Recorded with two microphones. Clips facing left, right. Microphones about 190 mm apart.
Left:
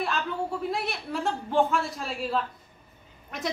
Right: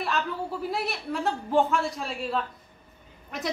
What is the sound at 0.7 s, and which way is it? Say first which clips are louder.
A woman's voice: right 1 dB; centre (ahead or behind).